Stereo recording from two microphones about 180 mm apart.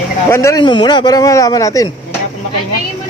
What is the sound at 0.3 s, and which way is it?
Speech, 15° left (ahead or behind).